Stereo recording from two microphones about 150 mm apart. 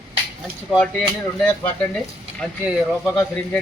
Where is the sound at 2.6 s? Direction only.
5° right (ahead or behind).